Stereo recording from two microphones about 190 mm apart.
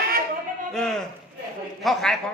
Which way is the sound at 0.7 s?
5° left (ahead or behind).